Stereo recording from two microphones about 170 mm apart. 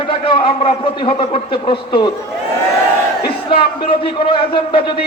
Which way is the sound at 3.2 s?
30° left (ahead or behind).